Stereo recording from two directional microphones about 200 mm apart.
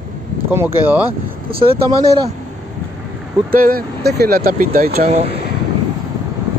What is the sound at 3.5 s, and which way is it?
Speech, 45° right (ahead or behind).